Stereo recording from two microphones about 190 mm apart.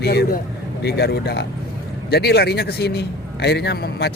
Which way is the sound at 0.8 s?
60° left (ahead or behind).